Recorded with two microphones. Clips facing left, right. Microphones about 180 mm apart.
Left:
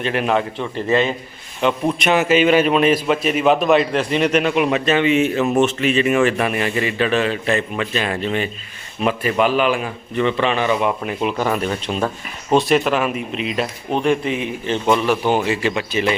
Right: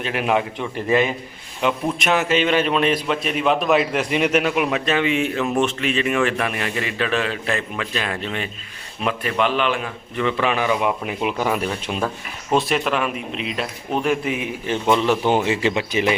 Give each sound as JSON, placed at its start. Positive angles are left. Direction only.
{"t": 0.0, "sound": "a man's voice", "side_deg": -5}
{"t": 1.6, "sound": "a man's voice", "side_deg": 0}
{"t": 10.2, "sound": "a man's voice", "side_deg": -5}